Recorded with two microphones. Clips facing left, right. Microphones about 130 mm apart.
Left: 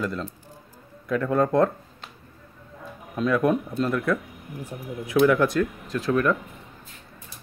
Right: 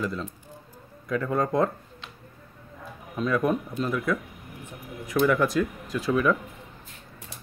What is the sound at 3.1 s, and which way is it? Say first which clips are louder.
Speech: left 3 dB; centre (ahead or behind).